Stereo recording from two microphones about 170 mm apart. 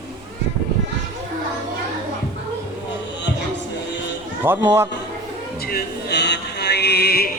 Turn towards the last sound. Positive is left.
turn(degrees=65)  # may be behind; listen again after turning